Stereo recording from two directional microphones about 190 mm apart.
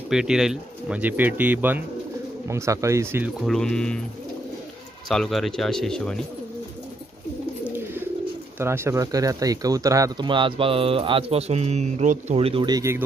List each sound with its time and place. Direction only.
0.1 s speech: 5° right (ahead or behind)
3.3 s speech: centre (ahead or behind)
5.0 s speech: centre (ahead or behind)
7.6 s bird: 10° right (ahead or behind)
8.5 s speech: 15° right (ahead or behind)